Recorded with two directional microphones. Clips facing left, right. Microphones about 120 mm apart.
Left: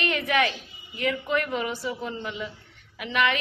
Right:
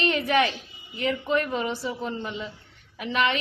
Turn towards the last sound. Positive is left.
turn(degrees=-30)  # may be behind; listen again after turning